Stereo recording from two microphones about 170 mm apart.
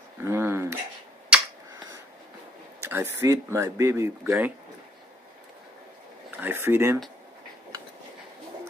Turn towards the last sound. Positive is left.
turn(degrees=-15)  # may be behind; listen again after turning